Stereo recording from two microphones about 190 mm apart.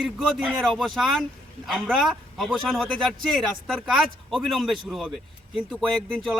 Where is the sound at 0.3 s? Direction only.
Centre (ahead or behind).